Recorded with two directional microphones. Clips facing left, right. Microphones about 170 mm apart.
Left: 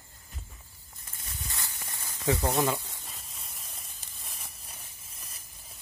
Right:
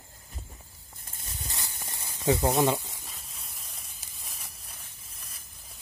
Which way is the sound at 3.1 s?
Centre (ahead or behind).